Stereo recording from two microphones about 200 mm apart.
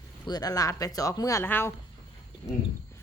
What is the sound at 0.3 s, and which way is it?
Speech, 20° left (ahead or behind).